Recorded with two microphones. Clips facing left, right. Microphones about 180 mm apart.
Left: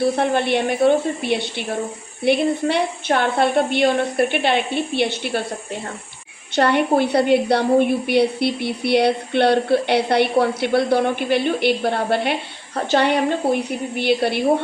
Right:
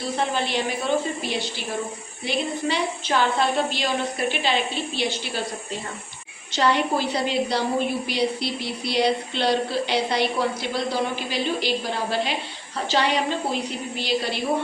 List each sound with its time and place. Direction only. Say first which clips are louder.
0.0 s a woman's voice: left 7 dB; 60° left (ahead or behind)
6.6 s a woman's voice: left 5 dB; 60° left (ahead or behind)